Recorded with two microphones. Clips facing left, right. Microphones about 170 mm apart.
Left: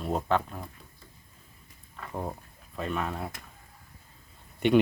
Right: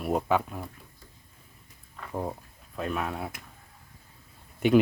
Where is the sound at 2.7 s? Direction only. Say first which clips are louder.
Right 1 dB; centre (ahead or behind).